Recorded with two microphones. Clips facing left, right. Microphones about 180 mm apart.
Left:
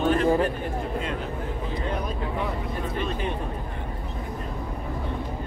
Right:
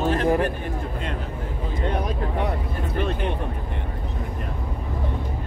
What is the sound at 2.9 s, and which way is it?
Speech, 60° right (ahead or behind).